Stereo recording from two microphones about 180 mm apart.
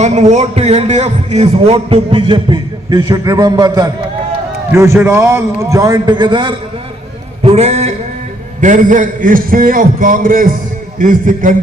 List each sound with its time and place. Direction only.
0.0 s a man's voice: 40° right (ahead or behind)
7.5 s a man's voice: 40° right (ahead or behind)